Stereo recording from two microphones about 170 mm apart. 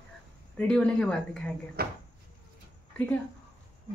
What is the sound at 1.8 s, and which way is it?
Speech, 65° right (ahead or behind).